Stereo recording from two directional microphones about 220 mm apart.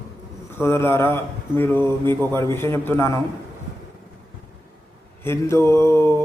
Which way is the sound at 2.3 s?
10° left (ahead or behind).